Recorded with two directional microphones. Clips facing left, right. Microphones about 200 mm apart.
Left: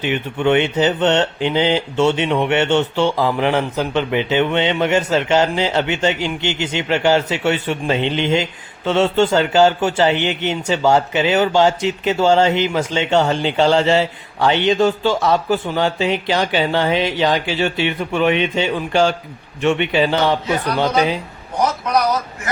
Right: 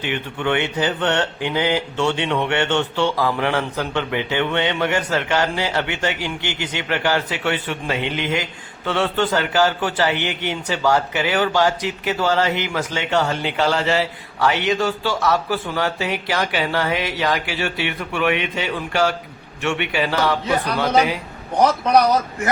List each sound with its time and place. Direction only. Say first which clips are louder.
0.0 s speech: left 5 dB; 20° left (ahead or behind)